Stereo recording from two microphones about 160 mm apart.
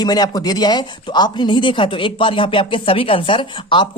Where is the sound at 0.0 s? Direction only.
25° left (ahead or behind).